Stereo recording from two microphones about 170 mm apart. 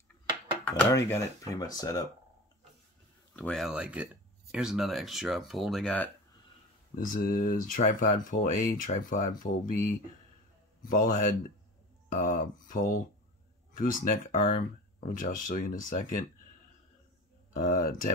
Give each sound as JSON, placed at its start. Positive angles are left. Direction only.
{"t": 0.7, "sound": "speech", "side_deg": 10}
{"t": 3.3, "sound": "speech", "side_deg": 5}
{"t": 7.1, "sound": "speech", "side_deg": 60}
{"t": 17.6, "sound": "speech", "side_deg": 55}